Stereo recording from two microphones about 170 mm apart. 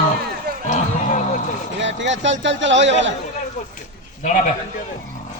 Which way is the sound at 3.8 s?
50° left (ahead or behind).